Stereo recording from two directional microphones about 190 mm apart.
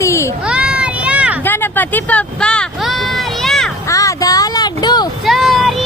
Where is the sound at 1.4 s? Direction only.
10° left (ahead or behind).